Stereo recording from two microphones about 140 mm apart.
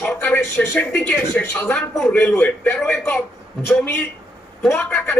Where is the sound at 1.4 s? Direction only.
20° left (ahead or behind).